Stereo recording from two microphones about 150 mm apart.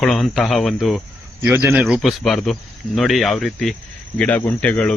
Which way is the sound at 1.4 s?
15° right (ahead or behind).